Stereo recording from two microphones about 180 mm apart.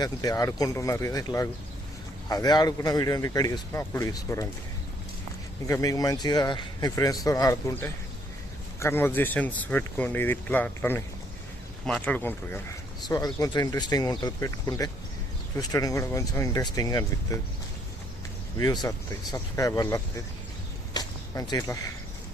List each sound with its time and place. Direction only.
0.0 s speech: 20° left (ahead or behind)
5.6 s speech: 15° left (ahead or behind)
13.1 s speech: 20° left (ahead or behind)
18.5 s speech: 20° left (ahead or behind)
20.9 s a sound: 20° left (ahead or behind)